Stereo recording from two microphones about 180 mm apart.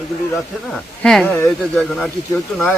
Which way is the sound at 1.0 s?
5° left (ahead or behind).